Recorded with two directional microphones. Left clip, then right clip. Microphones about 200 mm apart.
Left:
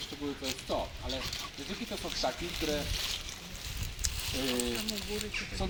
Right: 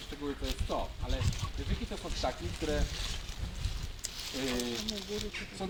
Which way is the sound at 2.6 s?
25° right (ahead or behind).